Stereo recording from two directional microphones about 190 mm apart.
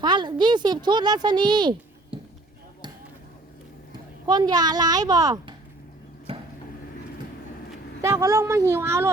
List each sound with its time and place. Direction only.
0.0 s a woman's voice: 25° right (ahead or behind)
4.3 s a woman's voice: 20° right (ahead or behind)
6.3 s vehicle: 30° right (ahead or behind)
8.0 s speech: 15° right (ahead or behind)